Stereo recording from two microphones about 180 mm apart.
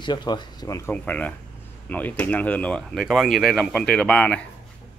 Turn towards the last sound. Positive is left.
turn(degrees=5)  # may be behind; listen again after turning